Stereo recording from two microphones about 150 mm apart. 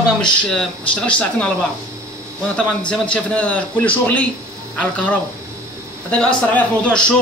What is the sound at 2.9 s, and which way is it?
Speech, 10° left (ahead or behind).